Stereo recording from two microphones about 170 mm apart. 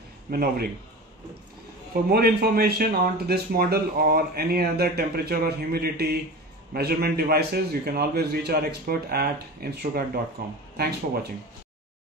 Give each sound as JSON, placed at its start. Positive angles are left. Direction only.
{"t": 0.3, "sound": "speech", "side_deg": -60}
{"t": 2.0, "sound": "a man's voice", "side_deg": -65}